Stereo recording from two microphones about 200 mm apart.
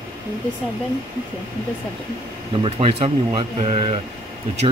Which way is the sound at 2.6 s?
30° right (ahead or behind).